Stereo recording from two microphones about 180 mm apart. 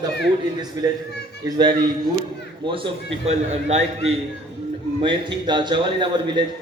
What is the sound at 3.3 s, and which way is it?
Speech, 35° right (ahead or behind).